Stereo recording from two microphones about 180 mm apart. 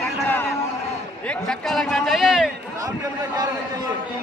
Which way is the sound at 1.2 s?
Centre (ahead or behind).